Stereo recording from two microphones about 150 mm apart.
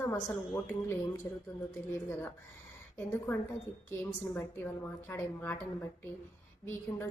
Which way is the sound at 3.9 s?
15° left (ahead or behind).